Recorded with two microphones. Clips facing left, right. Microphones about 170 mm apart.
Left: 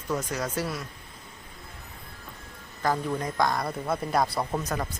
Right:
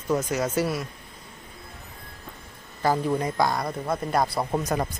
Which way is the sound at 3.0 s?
10° right (ahead or behind).